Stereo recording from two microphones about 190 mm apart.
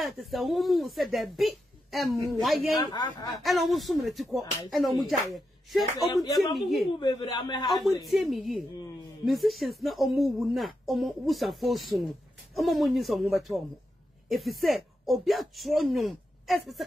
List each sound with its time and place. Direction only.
0.0 s speech: centre (ahead or behind)
2.8 s a man's voice: 20° left (ahead or behind)
3.4 s speech: centre (ahead or behind)
7.0 s a man's voice: 25° left (ahead or behind)
8.0 s speech: centre (ahead or behind)